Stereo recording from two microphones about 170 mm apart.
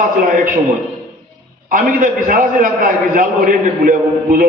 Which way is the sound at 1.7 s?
50° right (ahead or behind).